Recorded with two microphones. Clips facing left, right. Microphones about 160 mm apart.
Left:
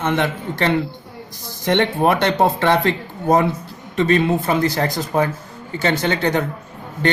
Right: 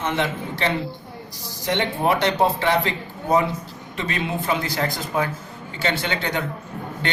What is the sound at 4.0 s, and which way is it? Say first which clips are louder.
Speech: left 10 dB; 45° left (ahead or behind).